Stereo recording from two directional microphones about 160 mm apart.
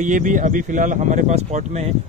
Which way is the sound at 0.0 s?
55° right (ahead or behind).